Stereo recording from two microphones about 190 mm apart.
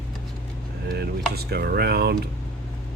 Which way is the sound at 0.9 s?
55° right (ahead or behind).